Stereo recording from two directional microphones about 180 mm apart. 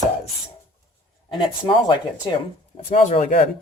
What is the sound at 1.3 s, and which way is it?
Speech, 25° left (ahead or behind).